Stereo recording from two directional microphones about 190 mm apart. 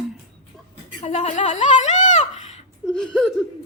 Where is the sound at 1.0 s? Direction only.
35° left (ahead or behind).